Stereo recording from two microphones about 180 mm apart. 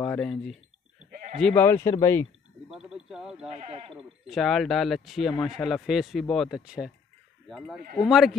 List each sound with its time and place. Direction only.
0.0 s speech: 5° left (ahead or behind)
2.7 s a sound: 5° right (ahead or behind)
3.4 s speech: 35° right (ahead or behind)
4.3 s speech: centre (ahead or behind)